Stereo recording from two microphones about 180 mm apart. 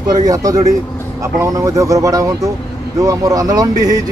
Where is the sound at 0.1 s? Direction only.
20° right (ahead or behind).